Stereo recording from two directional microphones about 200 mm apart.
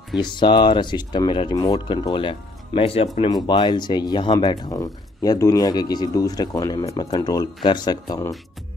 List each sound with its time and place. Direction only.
0.2 s speech: 20° left (ahead or behind)